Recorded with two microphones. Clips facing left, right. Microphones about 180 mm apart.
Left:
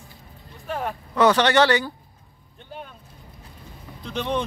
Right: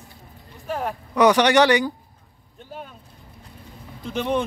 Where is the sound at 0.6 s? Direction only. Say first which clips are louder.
Right 1 dB; centre (ahead or behind).